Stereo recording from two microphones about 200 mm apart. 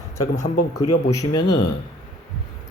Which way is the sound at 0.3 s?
40° left (ahead or behind).